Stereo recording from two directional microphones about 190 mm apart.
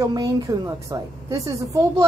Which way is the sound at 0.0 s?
20° right (ahead or behind).